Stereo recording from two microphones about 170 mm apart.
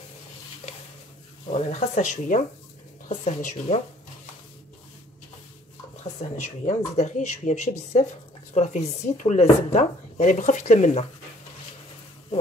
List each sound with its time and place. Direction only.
1.5 s speech: 40° left (ahead or behind)
6.2 s speech: 40° left (ahead or behind)